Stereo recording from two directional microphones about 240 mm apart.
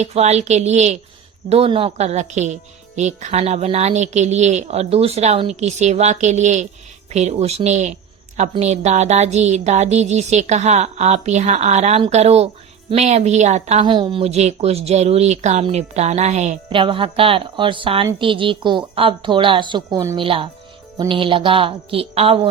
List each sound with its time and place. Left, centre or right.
0.0 s speech: right